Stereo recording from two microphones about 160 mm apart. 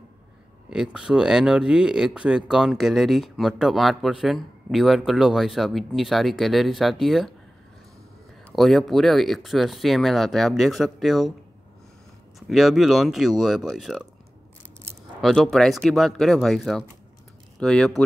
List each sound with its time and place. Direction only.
0.7 s speech: 5° right (ahead or behind)
8.5 s speech: centre (ahead or behind)
12.4 s speech: centre (ahead or behind)
15.2 s speech: centre (ahead or behind)